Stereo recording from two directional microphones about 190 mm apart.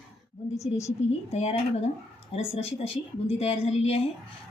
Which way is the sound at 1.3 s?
35° left (ahead or behind).